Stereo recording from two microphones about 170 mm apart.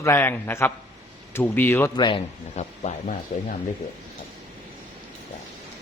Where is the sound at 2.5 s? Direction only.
40° left (ahead or behind).